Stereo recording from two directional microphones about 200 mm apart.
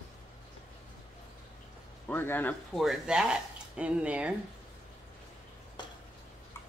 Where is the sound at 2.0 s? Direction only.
10° left (ahead or behind).